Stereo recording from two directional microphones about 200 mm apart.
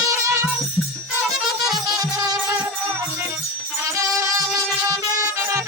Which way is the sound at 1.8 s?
15° right (ahead or behind).